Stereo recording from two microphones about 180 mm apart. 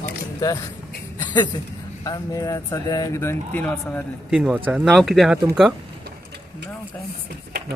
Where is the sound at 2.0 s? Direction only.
20° left (ahead or behind).